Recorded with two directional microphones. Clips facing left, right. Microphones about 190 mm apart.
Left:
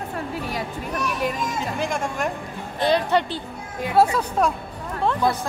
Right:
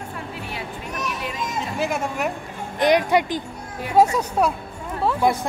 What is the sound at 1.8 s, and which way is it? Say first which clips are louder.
Speech: right 3 dB; 5° right (ahead or behind).